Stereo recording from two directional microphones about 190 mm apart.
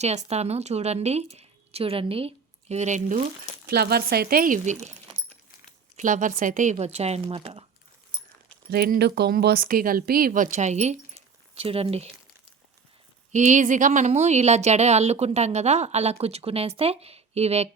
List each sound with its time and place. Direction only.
0.3 s speech: 35° right (ahead or behind)
3.7 s speech: 55° right (ahead or behind); by 4.9 s 40° right (ahead or behind)
6.0 s a woman's voice: 40° right (ahead or behind)
8.7 s a woman's voice: 55° right (ahead or behind); by 12.1 s 30° right (ahead or behind)
13.3 s a woman's voice: 40° right (ahead or behind)